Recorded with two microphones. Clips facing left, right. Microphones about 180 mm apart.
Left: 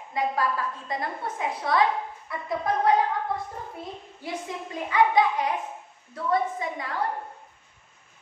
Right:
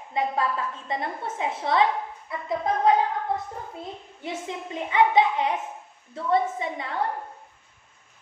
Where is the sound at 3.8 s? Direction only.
25° right (ahead or behind).